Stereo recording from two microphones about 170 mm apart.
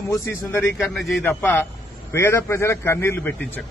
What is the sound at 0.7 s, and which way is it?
Speech, centre (ahead or behind).